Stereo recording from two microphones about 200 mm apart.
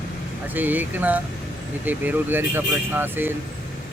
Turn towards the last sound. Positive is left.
turn(degrees=-10)  # may be behind; listen again after turning